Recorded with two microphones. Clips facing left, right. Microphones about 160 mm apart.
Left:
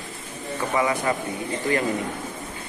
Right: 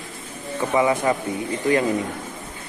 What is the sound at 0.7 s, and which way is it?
Speech, 20° right (ahead or behind).